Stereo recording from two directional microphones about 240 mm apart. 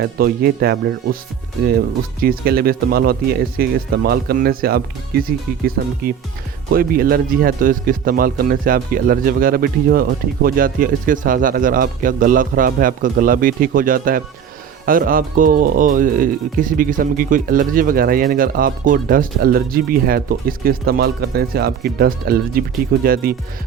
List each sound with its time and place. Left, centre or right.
0.0 s speech: right
2.2 s speech: right